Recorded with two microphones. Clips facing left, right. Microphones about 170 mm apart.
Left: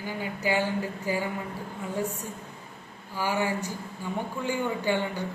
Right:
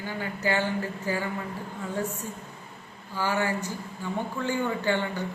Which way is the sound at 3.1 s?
15° left (ahead or behind).